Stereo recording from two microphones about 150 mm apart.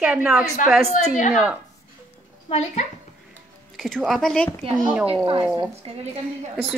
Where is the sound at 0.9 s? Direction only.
55° left (ahead or behind).